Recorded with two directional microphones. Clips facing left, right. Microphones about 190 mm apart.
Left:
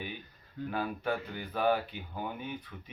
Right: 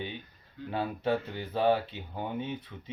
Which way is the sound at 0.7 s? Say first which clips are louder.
Right 4 dB; 25° right (ahead or behind).